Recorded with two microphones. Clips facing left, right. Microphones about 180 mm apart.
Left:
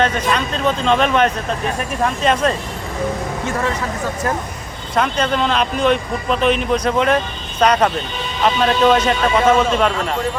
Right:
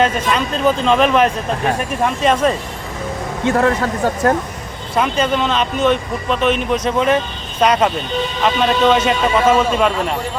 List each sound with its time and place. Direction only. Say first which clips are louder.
0.0 s speech: right 1 dB; 5° right (ahead or behind)
3.4 s speech: right 8 dB; 55° right (ahead or behind)
4.9 s speech: right 1 dB; 5° right (ahead or behind)